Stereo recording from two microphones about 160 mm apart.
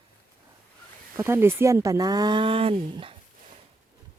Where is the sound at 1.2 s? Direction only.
15° right (ahead or behind); by 2.7 s 35° right (ahead or behind).